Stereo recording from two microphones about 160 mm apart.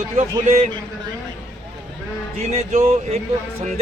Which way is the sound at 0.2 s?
40° right (ahead or behind).